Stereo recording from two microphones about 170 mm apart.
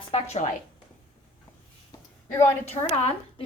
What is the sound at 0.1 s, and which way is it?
Speech, 40° left (ahead or behind).